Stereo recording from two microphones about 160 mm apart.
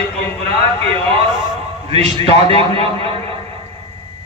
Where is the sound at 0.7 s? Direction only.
35° right (ahead or behind).